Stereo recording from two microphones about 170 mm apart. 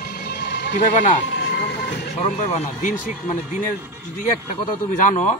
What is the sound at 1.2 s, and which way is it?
Speech, 90° left.